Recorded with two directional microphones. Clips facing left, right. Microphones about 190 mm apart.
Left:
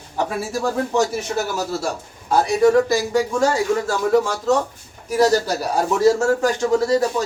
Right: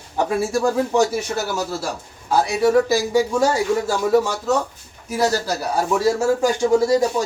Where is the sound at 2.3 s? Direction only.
5° right (ahead or behind).